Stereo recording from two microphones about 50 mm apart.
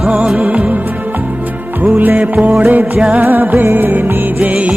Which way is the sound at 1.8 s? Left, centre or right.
Right.